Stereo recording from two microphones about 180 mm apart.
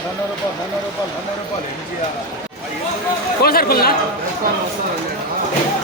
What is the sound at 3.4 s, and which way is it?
Speech, 60° left (ahead or behind).